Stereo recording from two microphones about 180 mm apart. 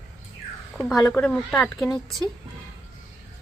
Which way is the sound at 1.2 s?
5° left (ahead or behind).